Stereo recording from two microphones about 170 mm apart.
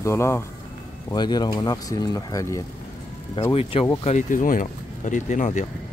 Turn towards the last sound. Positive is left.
turn(degrees=45)  # may be behind; listen again after turning